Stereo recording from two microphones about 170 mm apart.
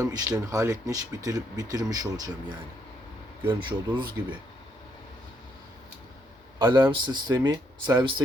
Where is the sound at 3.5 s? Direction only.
30° right (ahead or behind).